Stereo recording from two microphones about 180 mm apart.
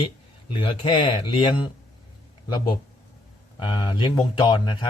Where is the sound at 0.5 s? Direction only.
25° left (ahead or behind).